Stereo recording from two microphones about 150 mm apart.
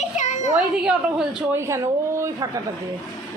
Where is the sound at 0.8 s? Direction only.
5° right (ahead or behind).